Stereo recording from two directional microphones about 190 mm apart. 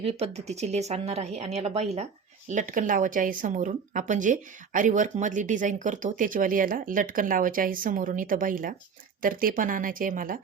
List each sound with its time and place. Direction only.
0.0 s a woman's voice: 30° right (ahead or behind)